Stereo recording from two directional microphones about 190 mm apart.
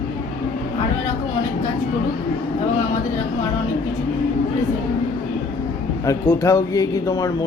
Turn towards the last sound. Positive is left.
turn(degrees=20)  # may be behind; listen again after turning